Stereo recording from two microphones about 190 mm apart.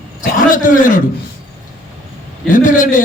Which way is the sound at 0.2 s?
45° left (ahead or behind).